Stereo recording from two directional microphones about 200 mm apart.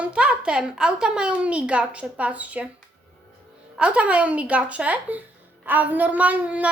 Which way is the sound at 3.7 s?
5° right (ahead or behind).